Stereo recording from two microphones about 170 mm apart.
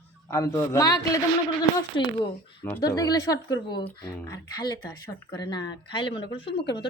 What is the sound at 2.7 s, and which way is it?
Speech, 20° left (ahead or behind).